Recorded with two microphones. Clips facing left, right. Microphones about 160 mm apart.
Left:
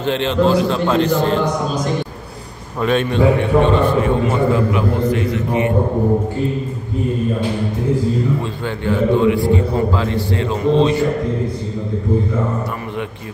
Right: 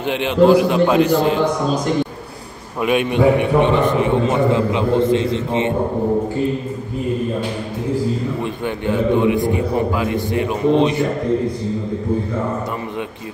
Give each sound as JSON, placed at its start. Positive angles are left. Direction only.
{"t": 0.0, "sound": "a man's voice", "side_deg": -15}
{"t": 2.8, "sound": "a man's voice", "side_deg": -15}
{"t": 8.6, "sound": "a man's voice", "side_deg": -20}